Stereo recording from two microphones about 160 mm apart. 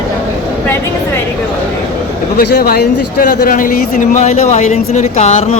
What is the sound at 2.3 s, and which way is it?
Speech, 80° left.